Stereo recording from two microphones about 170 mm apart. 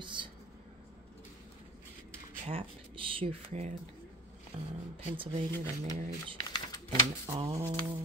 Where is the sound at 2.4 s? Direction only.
30° right (ahead or behind).